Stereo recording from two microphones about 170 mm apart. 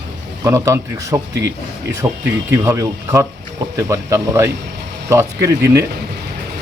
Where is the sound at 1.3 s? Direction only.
90° right.